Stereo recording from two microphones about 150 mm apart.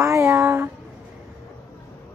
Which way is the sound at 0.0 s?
20° right (ahead or behind).